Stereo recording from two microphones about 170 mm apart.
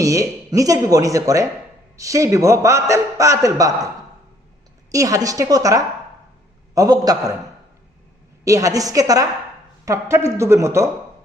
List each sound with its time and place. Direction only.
0.0 s a man's voice: 20° right (ahead or behind)
4.9 s a man's voice: 20° right (ahead or behind)
8.4 s a man's voice: 20° right (ahead or behind)